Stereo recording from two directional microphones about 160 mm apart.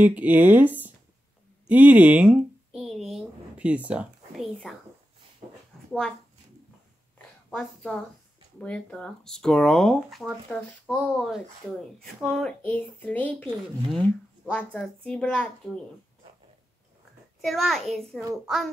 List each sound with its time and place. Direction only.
0.0 s speech: 10° right (ahead or behind)
5.4 s a sound: 30° right (ahead or behind)
7.5 s speech: 5° left (ahead or behind)
17.4 s speech: centre (ahead or behind)